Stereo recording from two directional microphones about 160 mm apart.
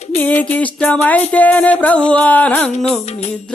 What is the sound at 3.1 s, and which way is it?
Music, 40° left (ahead or behind).